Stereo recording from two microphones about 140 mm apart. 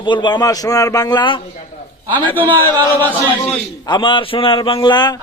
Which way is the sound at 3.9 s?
35° left (ahead or behind).